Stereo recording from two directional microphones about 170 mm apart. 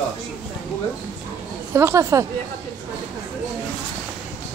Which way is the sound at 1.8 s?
15° right (ahead or behind).